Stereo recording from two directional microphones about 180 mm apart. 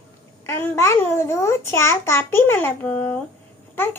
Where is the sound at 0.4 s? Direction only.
15° left (ahead or behind).